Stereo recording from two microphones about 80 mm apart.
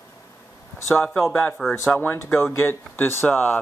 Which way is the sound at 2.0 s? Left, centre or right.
Left.